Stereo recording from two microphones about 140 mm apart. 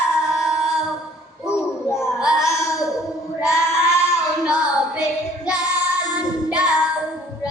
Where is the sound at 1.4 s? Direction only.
20° left (ahead or behind).